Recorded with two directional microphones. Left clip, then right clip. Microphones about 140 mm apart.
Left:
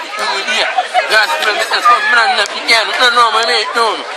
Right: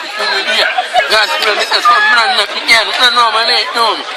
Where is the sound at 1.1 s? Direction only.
10° right (ahead or behind); by 3.6 s 10° left (ahead or behind).